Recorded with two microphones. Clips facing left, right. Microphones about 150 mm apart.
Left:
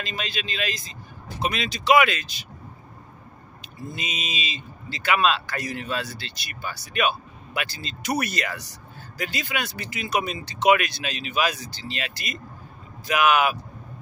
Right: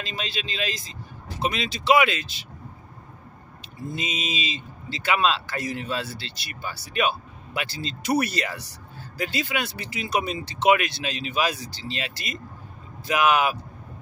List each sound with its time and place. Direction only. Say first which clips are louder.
0.0 s a man's voice: left 1 dB; 25° right (ahead or behind)
3.9 s a man's voice: right 4 dB; 30° right (ahead or behind)